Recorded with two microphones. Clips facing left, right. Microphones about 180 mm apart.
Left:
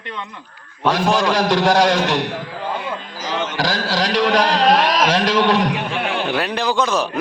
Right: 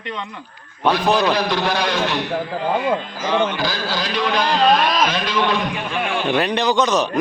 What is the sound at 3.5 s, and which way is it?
A man's voice, 85° left.